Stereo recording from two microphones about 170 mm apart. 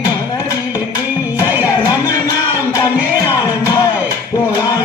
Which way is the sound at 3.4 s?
20° left (ahead or behind).